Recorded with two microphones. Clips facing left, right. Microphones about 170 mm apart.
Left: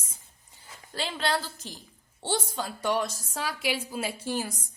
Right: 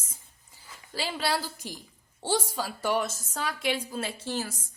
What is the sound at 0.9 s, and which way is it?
A woman's voice, 5° right (ahead or behind).